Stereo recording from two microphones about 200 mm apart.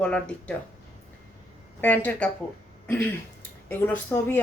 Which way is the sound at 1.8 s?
10° left (ahead or behind).